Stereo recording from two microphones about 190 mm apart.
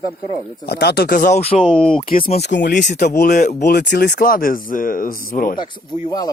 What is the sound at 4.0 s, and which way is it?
Speech, 50° left (ahead or behind).